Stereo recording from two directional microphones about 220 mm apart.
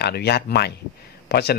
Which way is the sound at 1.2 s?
50° left (ahead or behind).